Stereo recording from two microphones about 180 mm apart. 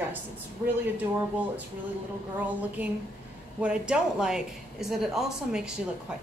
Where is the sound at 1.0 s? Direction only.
10° right (ahead or behind).